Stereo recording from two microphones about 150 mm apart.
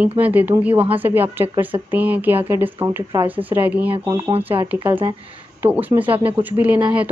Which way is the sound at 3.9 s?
25° right (ahead or behind).